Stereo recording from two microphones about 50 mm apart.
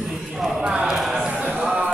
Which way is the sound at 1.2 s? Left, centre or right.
Centre.